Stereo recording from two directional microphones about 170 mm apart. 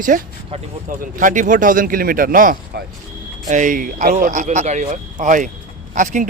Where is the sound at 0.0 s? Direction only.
50° right (ahead or behind).